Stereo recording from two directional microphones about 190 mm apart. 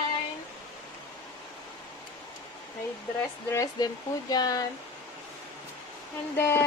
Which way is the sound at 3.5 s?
20° left (ahead or behind).